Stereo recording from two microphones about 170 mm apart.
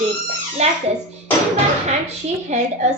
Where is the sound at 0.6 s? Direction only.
40° right (ahead or behind).